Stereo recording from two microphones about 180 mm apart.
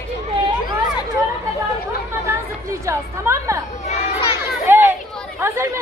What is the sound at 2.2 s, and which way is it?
Chatter, 15° right (ahead or behind).